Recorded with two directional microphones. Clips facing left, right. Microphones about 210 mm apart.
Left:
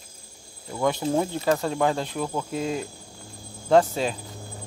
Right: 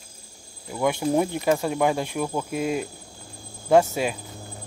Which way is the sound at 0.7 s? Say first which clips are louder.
Right 1 dB; 10° right (ahead or behind).